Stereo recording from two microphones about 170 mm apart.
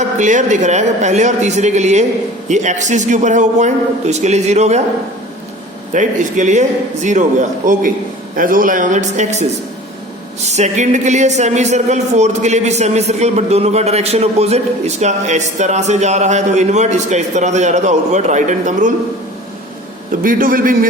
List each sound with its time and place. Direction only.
0.2 s speech: 45° right (ahead or behind)
5.9 s speech: 45° right (ahead or behind)
20.2 s a man's voice: 55° right (ahead or behind)